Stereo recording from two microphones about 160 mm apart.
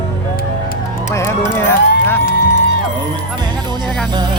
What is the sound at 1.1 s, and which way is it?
Music, 15° left (ahead or behind).